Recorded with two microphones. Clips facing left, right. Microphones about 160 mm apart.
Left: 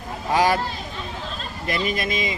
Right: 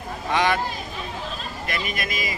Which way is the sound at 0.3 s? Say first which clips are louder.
Left 2 dB; 35° left (ahead or behind).